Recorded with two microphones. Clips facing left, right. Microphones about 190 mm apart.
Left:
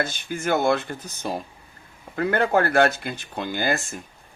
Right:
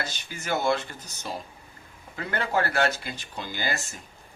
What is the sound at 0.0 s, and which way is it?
Speech, 50° left (ahead or behind).